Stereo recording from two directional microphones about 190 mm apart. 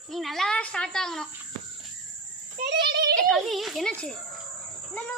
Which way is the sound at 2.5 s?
65° right (ahead or behind).